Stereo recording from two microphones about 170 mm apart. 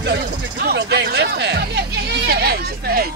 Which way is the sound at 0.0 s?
70° right (ahead or behind).